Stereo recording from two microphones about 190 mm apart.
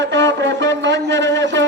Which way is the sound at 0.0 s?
70° right (ahead or behind).